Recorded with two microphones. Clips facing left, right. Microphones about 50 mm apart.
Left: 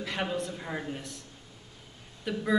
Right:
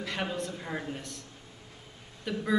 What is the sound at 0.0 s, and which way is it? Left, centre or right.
A man's voice, centre.